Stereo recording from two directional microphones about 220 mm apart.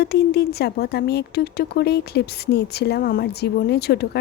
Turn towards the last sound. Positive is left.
turn(degrees=50)  # may be behind; listen again after turning